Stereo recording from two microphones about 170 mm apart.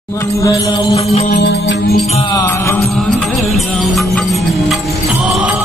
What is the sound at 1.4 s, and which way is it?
Music, 75° left (ahead or behind).